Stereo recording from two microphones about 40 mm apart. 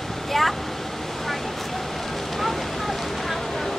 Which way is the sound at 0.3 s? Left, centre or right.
Centre.